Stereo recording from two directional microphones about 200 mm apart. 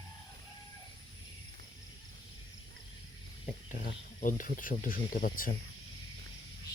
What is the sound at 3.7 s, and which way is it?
Speech, 40° left (ahead or behind).